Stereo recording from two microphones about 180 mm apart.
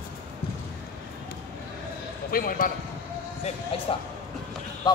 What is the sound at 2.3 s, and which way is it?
Speech, 55° left (ahead or behind).